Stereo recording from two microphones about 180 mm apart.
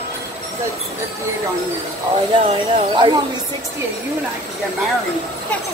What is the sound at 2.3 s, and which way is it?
Speech, 25° right (ahead or behind).